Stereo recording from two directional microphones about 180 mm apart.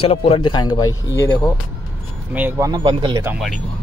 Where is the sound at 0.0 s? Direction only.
35° left (ahead or behind); by 1.5 s 15° left (ahead or behind).